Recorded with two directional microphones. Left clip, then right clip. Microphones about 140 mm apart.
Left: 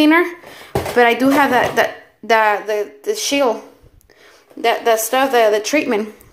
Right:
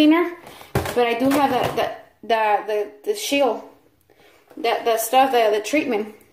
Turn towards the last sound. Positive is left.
turn(degrees=10)  # may be behind; listen again after turning